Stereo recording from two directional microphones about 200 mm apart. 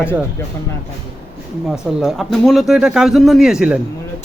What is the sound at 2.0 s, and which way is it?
A man's voice, centre (ahead or behind).